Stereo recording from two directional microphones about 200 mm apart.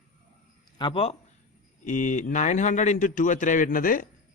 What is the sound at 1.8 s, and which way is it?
A man's voice, 40° left (ahead or behind).